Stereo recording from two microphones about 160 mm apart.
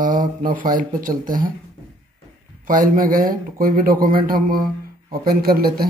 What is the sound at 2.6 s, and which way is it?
Speech, 60° right (ahead or behind).